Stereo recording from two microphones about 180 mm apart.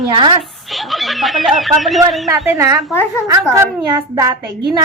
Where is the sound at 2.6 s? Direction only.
15° right (ahead or behind).